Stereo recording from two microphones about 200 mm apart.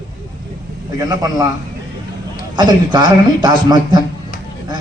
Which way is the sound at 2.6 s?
20° right (ahead or behind).